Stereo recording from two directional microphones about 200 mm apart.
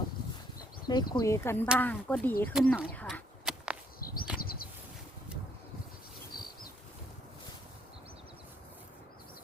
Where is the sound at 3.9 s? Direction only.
45° left (ahead or behind).